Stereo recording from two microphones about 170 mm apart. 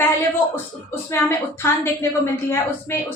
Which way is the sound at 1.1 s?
15° left (ahead or behind).